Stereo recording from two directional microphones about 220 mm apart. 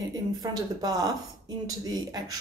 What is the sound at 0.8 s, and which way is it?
A woman's voice, 15° right (ahead or behind).